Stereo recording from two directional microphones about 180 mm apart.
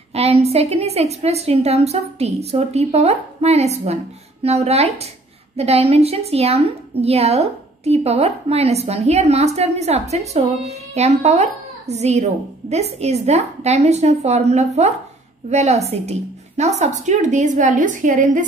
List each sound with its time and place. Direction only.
0.1 s a woman's voice: 35° right (ahead or behind)